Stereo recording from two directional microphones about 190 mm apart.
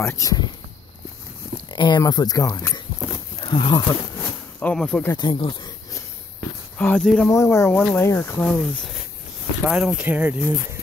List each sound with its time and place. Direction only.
0.0 s speech: 15° left (ahead or behind)
1.7 s speech: 20° left (ahead or behind)
3.3 s speech: 25° left (ahead or behind)
4.6 s speech: 5° left (ahead or behind)
5.1 s snake: 25° left (ahead or behind)
6.8 s speech: 5° left (ahead or behind)
7.2 s speech: 15° left (ahead or behind)
9.7 s speech: 5° right (ahead or behind)